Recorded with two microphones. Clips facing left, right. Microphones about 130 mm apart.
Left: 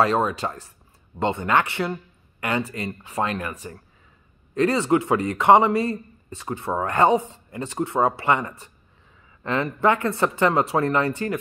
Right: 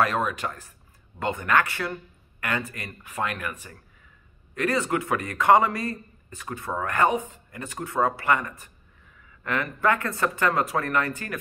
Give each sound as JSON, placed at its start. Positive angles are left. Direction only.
{"t": 0.0, "sound": "a man's voice", "side_deg": 30}